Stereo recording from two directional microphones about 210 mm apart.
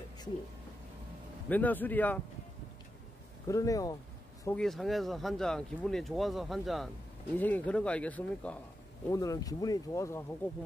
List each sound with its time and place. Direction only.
1.5 s speech: 10° left (ahead or behind)
3.4 s speech: 15° left (ahead or behind)
4.5 s speech: centre (ahead or behind)